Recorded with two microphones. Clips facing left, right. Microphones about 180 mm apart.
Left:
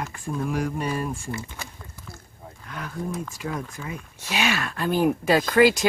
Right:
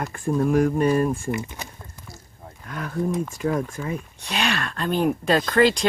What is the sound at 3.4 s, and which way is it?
Speech, 45° right (ahead or behind).